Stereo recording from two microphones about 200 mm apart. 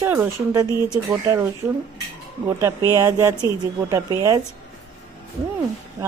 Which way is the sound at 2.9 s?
15° right (ahead or behind).